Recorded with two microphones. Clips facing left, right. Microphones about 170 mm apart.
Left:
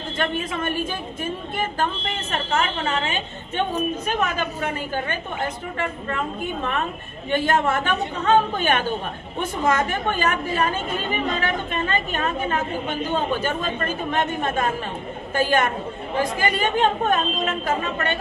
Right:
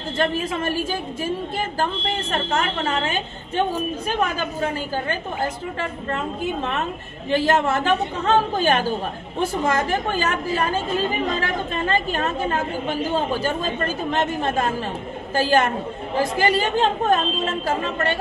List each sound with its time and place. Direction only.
0.2 s a woman's voice: 35° right (ahead or behind)
1.8 s a woman's voice: 35° right (ahead or behind)
7.2 s a woman's voice: 30° right (ahead or behind)